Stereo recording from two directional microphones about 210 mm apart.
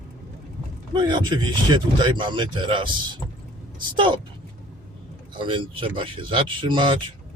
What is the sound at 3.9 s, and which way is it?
Speech, 25° right (ahead or behind).